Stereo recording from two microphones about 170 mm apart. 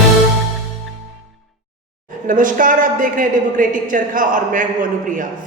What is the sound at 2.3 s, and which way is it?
A man's voice, 50° right (ahead or behind).